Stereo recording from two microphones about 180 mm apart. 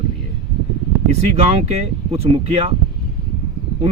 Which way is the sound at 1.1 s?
35° right (ahead or behind).